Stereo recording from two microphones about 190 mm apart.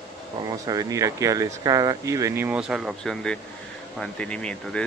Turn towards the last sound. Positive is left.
turn(degrees=5)  # may be behind; listen again after turning